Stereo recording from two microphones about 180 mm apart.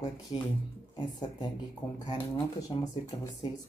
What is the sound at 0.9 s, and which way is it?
Speech, 25° left (ahead or behind).